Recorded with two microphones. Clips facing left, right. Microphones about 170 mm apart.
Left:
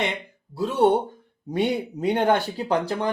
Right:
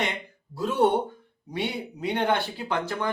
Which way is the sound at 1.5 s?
45° left (ahead or behind).